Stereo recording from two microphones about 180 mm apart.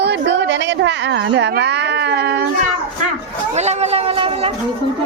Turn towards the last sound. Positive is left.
turn(degrees=-30)  # may be behind; listen again after turning